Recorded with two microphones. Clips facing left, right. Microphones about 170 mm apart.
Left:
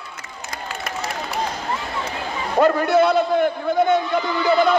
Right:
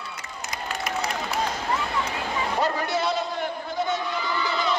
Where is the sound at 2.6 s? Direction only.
55° left (ahead or behind).